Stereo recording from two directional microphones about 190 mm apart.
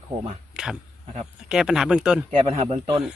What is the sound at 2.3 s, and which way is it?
Speech, 30° right (ahead or behind).